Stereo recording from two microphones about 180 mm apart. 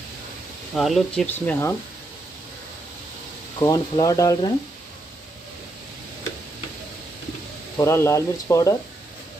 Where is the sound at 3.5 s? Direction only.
20° left (ahead or behind).